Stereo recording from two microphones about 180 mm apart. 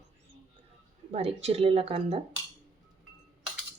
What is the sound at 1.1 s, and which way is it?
Speech, 35° right (ahead or behind).